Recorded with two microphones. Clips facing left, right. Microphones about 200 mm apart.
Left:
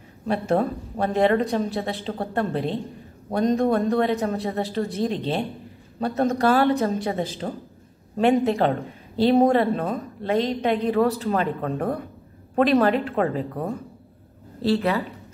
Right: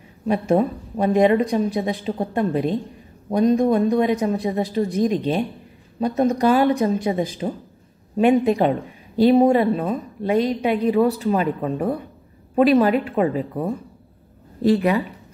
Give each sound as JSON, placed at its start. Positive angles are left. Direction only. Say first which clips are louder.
{"t": 0.3, "sound": "speech", "louder": "right 3 dB", "side_deg": -15}